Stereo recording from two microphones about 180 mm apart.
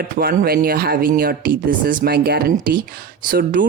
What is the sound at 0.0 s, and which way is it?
Speech, 55° right (ahead or behind).